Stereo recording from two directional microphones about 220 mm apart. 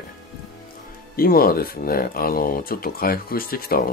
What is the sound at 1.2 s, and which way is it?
Speech, 40° left (ahead or behind).